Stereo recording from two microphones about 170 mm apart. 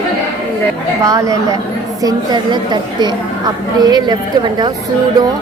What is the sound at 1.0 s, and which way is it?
A woman's voice, 20° right (ahead or behind).